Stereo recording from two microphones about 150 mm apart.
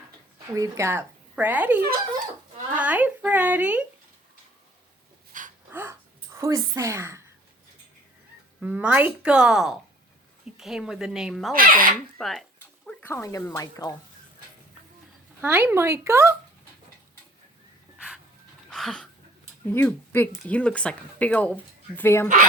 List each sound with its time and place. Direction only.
0.5 s speech: 20° right (ahead or behind)
5.3 s a sound: 60° right (ahead or behind)
5.7 s gasp: 15° right (ahead or behind)
8.6 s a woman's voice: 10° right (ahead or behind)
11.5 s speech: 70° right (ahead or behind)
12.1 s a woman's voice: centre (ahead or behind)
13.1 s speech: 20° left (ahead or behind)
15.4 s speech: 15° right (ahead or behind)
17.9 s pant: 5° right (ahead or behind)
18.7 s a sound: 5° left (ahead or behind)
19.6 s speech: 15° left (ahead or behind)